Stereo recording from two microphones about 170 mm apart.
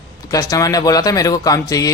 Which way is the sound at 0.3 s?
20° left (ahead or behind).